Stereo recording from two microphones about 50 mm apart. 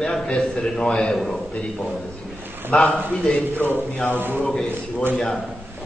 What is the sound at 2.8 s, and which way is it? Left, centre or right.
Speech, left.